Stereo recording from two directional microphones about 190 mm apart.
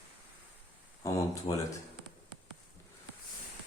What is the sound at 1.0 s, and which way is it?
Speech, 15° left (ahead or behind).